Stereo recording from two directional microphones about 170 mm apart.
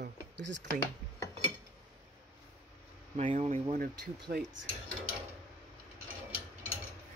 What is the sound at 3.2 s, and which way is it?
Speech, 40° right (ahead or behind).